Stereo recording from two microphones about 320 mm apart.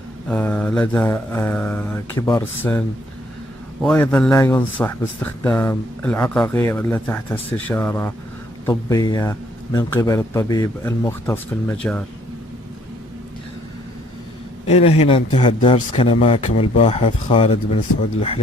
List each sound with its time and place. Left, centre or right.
0.3 s mantra: centre
3.8 s speech: centre
14.7 s speech: centre